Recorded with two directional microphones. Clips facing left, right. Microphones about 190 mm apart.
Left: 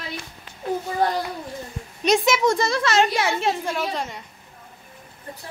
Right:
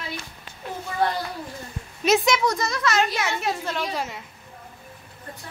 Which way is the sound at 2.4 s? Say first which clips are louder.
Left 4 dB; 30° left (ahead or behind).